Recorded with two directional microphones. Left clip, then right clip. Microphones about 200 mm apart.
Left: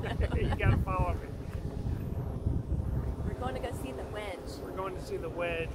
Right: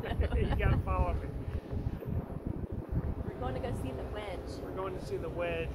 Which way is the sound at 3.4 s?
5° left (ahead or behind).